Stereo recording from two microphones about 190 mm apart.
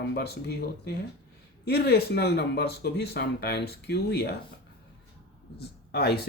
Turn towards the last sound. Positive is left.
turn(degrees=55)  # may be behind; listen again after turning